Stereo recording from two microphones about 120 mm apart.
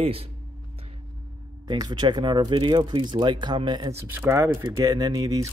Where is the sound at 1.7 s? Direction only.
40° right (ahead or behind).